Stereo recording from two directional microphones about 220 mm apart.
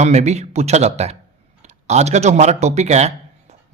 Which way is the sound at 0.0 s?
30° right (ahead or behind).